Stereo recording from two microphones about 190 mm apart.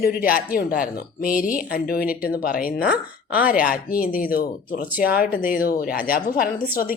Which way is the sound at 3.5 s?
45° left (ahead or behind).